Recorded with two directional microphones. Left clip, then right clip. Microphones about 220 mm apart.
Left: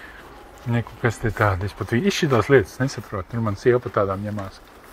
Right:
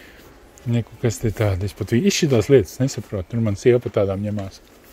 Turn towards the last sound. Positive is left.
turn(degrees=-60)  # may be behind; listen again after turning